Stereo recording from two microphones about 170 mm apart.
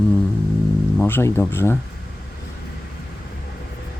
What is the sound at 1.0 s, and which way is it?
Speech, 15° left (ahead or behind).